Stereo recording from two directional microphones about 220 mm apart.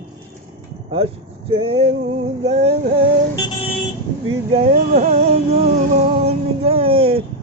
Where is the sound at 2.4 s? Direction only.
30° right (ahead or behind).